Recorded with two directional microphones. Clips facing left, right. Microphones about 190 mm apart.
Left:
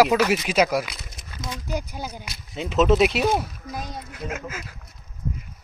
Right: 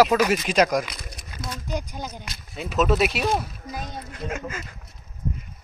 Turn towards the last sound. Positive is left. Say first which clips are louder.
# right 1 dB
turn(degrees=5)  # may be behind; listen again after turning